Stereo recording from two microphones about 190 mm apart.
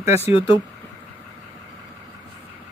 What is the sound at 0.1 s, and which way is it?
Speech, 30° left (ahead or behind).